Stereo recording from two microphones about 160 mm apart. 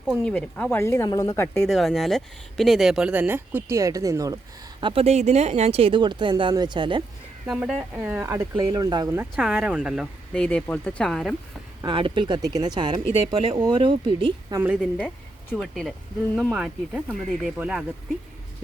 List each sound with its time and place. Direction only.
0.0 s speech: 5° right (ahead or behind)
0.3 s speech: 10° left (ahead or behind)
1.5 s speech: centre (ahead or behind); by 4.4 s 20° right (ahead or behind)
4.8 s speech: 35° right (ahead or behind)
7.4 s speech: centre (ahead or behind); by 9.0 s 25° right (ahead or behind)
9.0 s speech: 10° right (ahead or behind)
11.8 s speech: 30° right (ahead or behind)
14.5 s speech: 10° right (ahead or behind)
14.8 s speech: 10° left (ahead or behind)